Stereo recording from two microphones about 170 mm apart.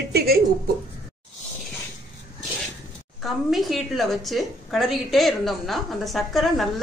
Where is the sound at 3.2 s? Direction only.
Centre (ahead or behind).